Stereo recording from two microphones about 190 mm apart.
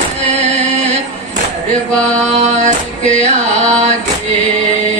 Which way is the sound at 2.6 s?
40° right (ahead or behind).